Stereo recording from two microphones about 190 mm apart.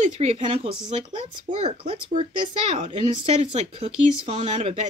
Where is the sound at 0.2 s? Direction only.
30° right (ahead or behind).